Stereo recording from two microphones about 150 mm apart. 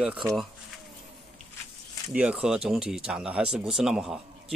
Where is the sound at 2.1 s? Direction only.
10° right (ahead or behind).